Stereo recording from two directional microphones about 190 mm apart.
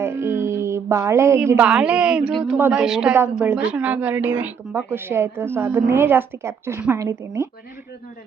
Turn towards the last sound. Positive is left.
turn(degrees=-15)  # may be behind; listen again after turning